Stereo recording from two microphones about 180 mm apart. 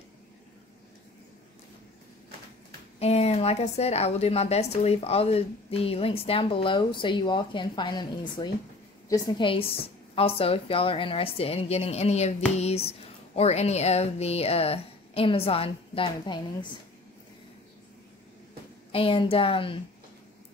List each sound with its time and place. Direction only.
3.0 s speech: 35° left (ahead or behind)
18.9 s speech: 30° left (ahead or behind)